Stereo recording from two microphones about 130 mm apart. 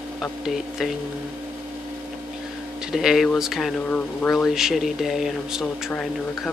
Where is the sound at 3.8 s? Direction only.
10° left (ahead or behind).